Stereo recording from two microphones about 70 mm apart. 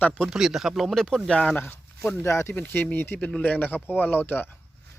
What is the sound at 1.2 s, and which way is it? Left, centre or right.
Speech, centre.